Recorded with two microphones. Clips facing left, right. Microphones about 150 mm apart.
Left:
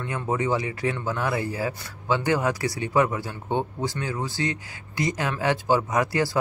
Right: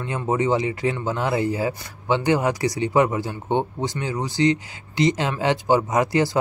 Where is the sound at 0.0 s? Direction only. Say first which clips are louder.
Right 4 dB; 20° right (ahead or behind).